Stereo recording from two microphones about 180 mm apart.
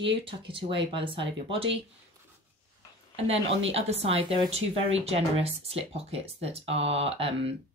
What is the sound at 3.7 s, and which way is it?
A woman's voice, 35° right (ahead or behind).